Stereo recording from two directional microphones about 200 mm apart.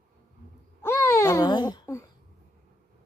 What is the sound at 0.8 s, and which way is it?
Babbling, 10° left (ahead or behind).